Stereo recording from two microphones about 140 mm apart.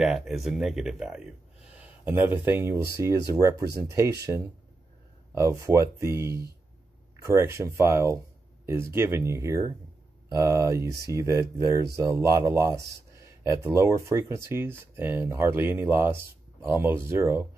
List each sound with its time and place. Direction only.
0.0 s a man's voice: centre (ahead or behind)